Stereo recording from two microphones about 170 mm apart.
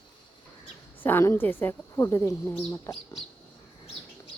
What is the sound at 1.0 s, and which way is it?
Speech, 15° left (ahead or behind).